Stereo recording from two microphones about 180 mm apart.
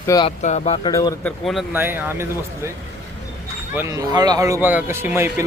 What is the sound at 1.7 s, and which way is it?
A man's voice, 10° right (ahead or behind).